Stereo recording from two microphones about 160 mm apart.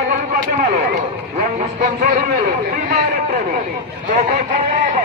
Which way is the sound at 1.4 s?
55° right (ahead or behind).